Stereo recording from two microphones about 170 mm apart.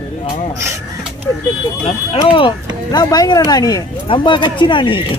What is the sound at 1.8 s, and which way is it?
Speech, 35° left (ahead or behind).